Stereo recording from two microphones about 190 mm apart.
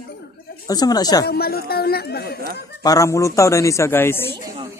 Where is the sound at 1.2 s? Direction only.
55° left (ahead or behind).